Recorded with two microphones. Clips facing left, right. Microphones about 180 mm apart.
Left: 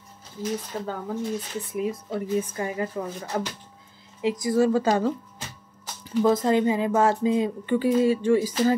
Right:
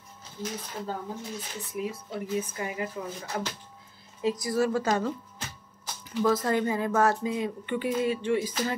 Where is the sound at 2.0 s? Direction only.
40° left (ahead or behind).